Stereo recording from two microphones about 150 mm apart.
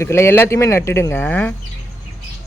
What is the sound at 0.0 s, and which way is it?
Speech, 15° left (ahead or behind).